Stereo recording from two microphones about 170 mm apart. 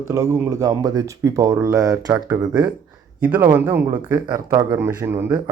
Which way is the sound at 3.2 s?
10° right (ahead or behind).